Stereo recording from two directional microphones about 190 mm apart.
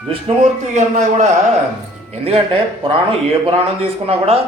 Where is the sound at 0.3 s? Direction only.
35° right (ahead or behind).